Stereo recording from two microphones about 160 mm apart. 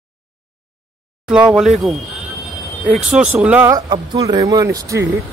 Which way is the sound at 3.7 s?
25° right (ahead or behind).